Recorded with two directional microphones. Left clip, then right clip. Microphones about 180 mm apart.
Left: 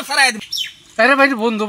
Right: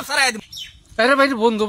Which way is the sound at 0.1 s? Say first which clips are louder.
Left 4 dB; 25° right (ahead or behind).